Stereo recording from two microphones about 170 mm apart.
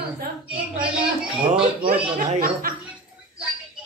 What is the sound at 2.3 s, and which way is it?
Speech, 55° right (ahead or behind).